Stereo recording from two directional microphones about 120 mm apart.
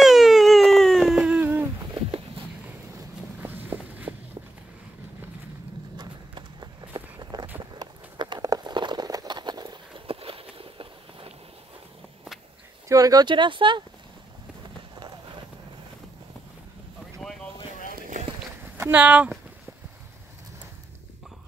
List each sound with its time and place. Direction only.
0.0 s a sound: centre (ahead or behind)
1.2 s humming: 10° right (ahead or behind)
2.0 s a sound: 50° right (ahead or behind)
3.3 s walk: 15° right (ahead or behind)
5.9 s walk: 40° right (ahead or behind)
7.7 s a sound: 35° right (ahead or behind)
10.0 s walk: 50° right (ahead or behind)
12.8 s speech: 30° right (ahead or behind)
14.8 s run: 40° right (ahead or behind)
17.2 s boat: centre (ahead or behind)
18.8 s speech: 10° right (ahead or behind)